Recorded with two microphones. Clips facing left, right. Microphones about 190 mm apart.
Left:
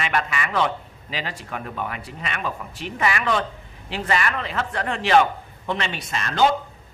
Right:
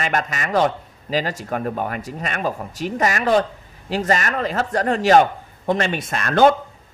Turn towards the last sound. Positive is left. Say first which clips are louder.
# right 5 dB
turn(degrees=-55)  # may be behind; listen again after turning